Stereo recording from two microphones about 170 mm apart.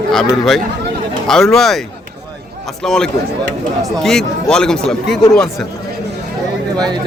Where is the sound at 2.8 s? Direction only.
5° left (ahead or behind).